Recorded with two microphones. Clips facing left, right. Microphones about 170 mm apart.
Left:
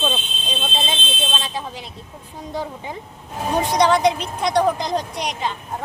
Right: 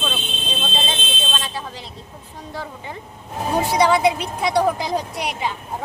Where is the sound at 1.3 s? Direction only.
15° left (ahead or behind).